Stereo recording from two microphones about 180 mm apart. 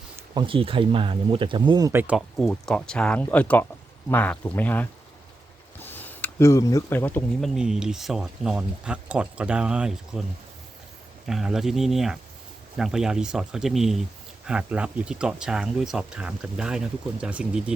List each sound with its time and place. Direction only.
0.3 s speech: 30° right (ahead or behind); by 7.5 s 10° left (ahead or behind)
7.5 s speech: 5° right (ahead or behind)
11.3 s speech: centre (ahead or behind)